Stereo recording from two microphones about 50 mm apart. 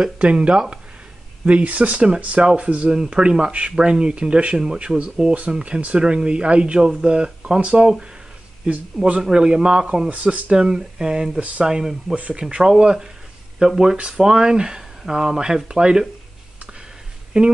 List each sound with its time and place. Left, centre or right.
0.0 s speech: right
9.2 s speech: centre
10.0 s speech: right
10.5 s speech: centre
12.2 s speech: right
17.3 s speech: right